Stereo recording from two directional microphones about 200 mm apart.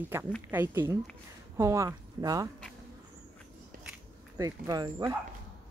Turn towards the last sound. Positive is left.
turn(degrees=-20)  # may be behind; listen again after turning